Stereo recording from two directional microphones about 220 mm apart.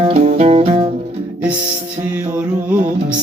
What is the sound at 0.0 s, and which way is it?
Music, 30° right (ahead or behind).